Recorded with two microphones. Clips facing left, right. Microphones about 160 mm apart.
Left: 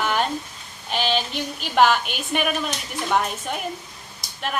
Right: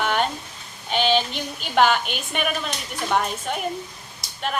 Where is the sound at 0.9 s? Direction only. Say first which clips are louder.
Right 3 dB; centre (ahead or behind).